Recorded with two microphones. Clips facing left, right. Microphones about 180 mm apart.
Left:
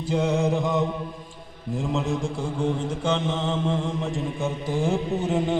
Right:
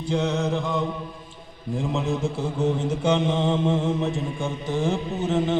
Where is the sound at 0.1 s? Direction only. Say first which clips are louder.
Left 1 dB; 10° left (ahead or behind).